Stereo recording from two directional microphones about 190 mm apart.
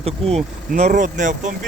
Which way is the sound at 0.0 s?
35° right (ahead or behind).